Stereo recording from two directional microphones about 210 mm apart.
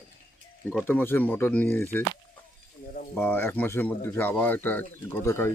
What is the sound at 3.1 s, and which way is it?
Speech, 10° left (ahead or behind).